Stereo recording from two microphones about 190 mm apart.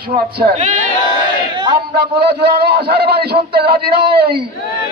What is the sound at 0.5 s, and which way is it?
Speech, 40° right (ahead or behind).